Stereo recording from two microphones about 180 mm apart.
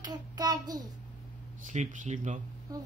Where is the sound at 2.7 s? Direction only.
20° right (ahead or behind).